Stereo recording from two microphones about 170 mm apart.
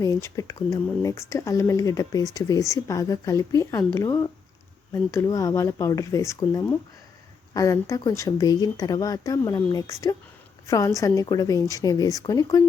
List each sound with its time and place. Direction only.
0.0 s speech: 20° left (ahead or behind)